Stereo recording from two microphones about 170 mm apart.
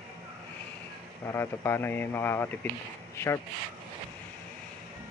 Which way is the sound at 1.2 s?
15° left (ahead or behind).